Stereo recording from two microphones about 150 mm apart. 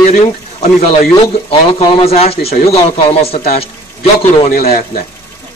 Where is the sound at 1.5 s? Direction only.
35° left (ahead or behind).